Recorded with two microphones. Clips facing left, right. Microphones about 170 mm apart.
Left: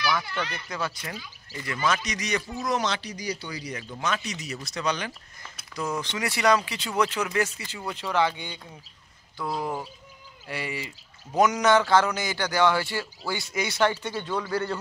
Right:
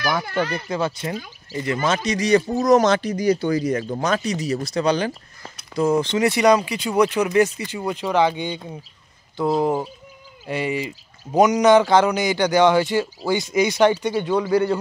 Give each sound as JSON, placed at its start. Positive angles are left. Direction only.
{"t": 0.0, "sound": "speech", "side_deg": -50}
{"t": 0.7, "sound": "a man's voice", "side_deg": -25}